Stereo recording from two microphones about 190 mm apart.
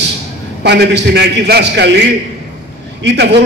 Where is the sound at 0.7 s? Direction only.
60° right (ahead or behind).